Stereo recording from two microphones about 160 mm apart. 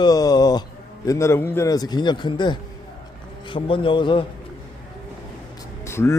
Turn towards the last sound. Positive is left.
turn(degrees=15)  # may be behind; listen again after turning